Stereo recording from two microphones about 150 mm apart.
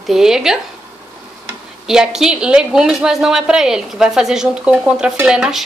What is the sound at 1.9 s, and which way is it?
Speech, 5° right (ahead or behind).